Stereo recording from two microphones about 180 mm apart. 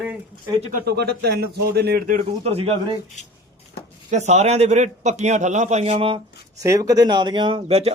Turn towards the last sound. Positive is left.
turn(degrees=-35)  # may be behind; listen again after turning